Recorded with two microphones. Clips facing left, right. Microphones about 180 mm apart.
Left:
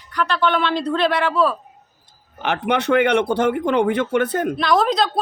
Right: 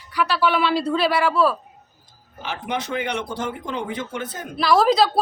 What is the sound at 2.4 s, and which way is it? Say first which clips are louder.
Speech: left 7 dB; 65° left (ahead or behind).